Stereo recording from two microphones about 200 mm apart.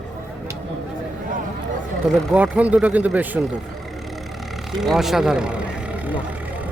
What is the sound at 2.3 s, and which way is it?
Speech, 5° right (ahead or behind).